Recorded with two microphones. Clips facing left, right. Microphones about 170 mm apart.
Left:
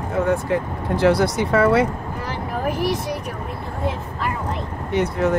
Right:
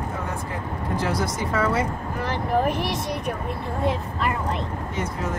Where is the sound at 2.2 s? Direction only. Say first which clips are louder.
Right 3 dB; 10° left (ahead or behind).